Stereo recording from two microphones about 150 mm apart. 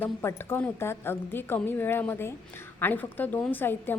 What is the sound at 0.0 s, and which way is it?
A woman's voice, 15° left (ahead or behind).